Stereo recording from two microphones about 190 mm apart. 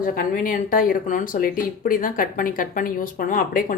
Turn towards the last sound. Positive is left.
turn(degrees=45)  # may be behind; listen again after turning